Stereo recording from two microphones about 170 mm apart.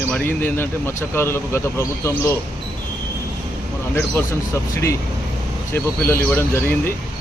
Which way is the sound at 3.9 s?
15° left (ahead or behind).